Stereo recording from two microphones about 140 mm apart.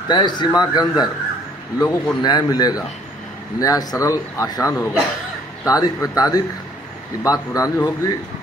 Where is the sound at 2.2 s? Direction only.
30° left (ahead or behind).